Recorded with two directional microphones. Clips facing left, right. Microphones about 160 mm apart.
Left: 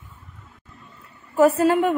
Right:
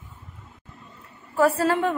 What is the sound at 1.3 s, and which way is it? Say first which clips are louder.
Speech: left 4 dB; 15° left (ahead or behind).